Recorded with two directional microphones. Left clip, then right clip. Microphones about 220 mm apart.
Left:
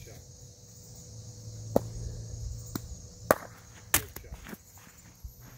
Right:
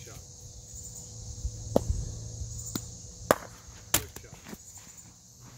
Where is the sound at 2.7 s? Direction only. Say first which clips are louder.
Left 1 dB; 10° right (ahead or behind).